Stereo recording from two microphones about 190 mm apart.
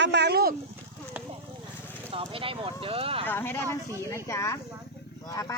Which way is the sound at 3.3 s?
10° left (ahead or behind).